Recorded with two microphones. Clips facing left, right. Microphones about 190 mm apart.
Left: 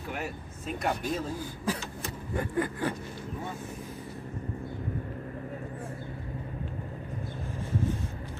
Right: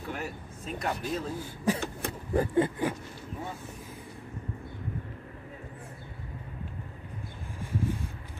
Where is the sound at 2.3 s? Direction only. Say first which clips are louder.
Right 5 dB; 25° right (ahead or behind).